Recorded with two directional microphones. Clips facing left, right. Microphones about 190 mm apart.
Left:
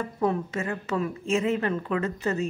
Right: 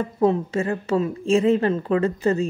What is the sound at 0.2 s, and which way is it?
A woman's voice, 30° right (ahead or behind).